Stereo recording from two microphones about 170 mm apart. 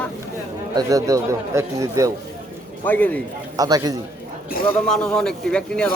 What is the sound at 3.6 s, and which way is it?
Speech, 20° right (ahead or behind).